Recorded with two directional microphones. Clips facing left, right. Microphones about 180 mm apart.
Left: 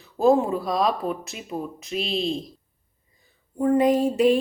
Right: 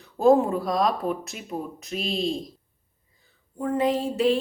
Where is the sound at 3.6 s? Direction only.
15° left (ahead or behind).